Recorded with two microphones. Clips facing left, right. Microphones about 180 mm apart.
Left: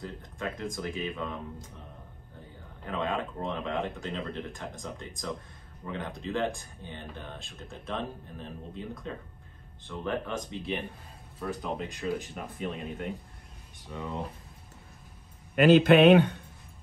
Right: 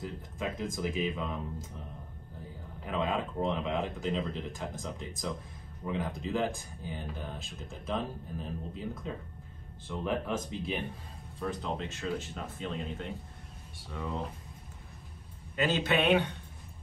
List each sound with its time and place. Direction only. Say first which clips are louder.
0.0 s speech: even; 5° right (ahead or behind)
2.8 s speech: even; 5° right (ahead or behind); by 12.7 s 15° left (ahead or behind)
13.7 s speech: left 1 dB; 15° left (ahead or behind)
15.5 s a man's voice: left 10 dB; 60° left (ahead or behind)